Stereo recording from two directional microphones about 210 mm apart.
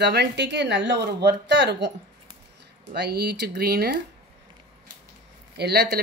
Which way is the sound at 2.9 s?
50° right (ahead or behind).